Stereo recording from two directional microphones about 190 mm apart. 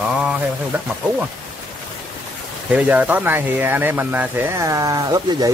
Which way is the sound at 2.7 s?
10° right (ahead or behind).